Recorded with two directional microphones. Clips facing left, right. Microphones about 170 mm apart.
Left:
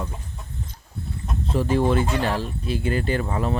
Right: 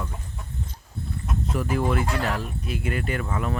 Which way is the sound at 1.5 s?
30° left (ahead or behind).